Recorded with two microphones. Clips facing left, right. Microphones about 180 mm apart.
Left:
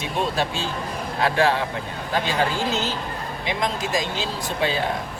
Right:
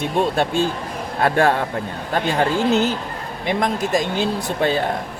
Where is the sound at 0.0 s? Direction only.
55° right (ahead or behind).